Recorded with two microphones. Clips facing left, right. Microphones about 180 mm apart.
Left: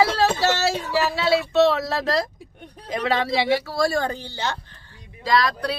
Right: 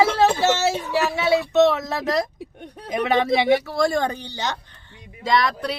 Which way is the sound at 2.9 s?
20° right (ahead or behind).